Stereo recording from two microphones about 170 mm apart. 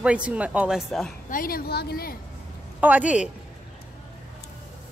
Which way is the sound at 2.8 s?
10° right (ahead or behind).